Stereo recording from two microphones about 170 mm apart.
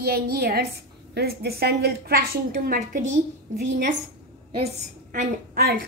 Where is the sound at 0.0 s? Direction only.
65° right (ahead or behind).